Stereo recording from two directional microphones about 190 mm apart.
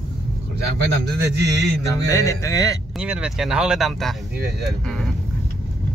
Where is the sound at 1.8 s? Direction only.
15° left (ahead or behind).